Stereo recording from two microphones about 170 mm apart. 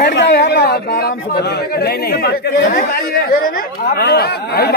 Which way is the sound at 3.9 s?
70° left (ahead or behind).